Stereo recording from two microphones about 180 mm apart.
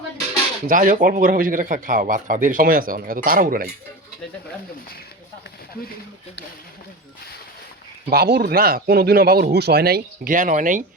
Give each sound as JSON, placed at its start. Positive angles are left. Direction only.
{"t": 0.7, "sound": "speech", "side_deg": -50}
{"t": 8.1, "sound": "speech", "side_deg": -60}